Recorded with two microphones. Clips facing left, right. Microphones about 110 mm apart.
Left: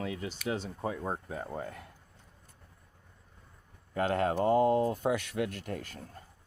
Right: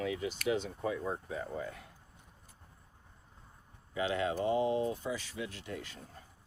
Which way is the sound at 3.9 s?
50° left (ahead or behind).